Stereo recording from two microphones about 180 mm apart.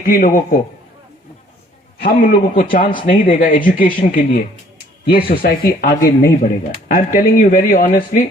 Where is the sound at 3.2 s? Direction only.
50° left (ahead or behind).